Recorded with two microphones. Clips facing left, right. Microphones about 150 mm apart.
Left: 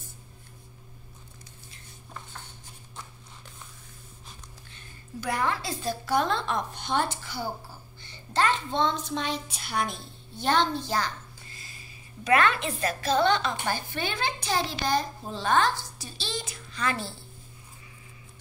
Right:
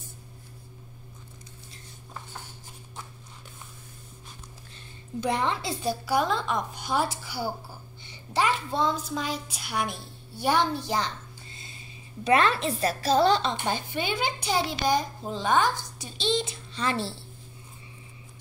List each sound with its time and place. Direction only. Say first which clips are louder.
4.7 s a woman's voice: right 5 dB; 25° right (ahead or behind)
6.0 s a child's voice: even; 5° right (ahead or behind); by 17.2 s 30° right (ahead or behind)